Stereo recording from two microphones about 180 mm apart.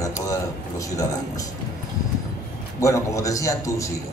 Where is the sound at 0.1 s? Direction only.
20° left (ahead or behind).